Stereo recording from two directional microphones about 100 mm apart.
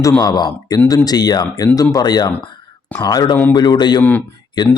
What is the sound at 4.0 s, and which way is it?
Speech, 15° left (ahead or behind).